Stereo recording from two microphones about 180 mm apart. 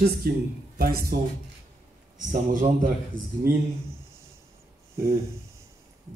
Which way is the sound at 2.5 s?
45° right (ahead or behind).